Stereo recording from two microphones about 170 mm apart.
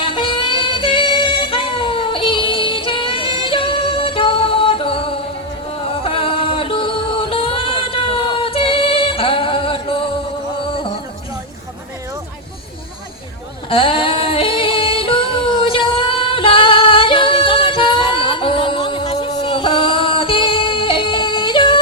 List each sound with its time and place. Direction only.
0.0 s female singing: 30° left (ahead or behind)
6.0 s music: 30° left (ahead or behind)
13.7 s female singing: 30° left (ahead or behind)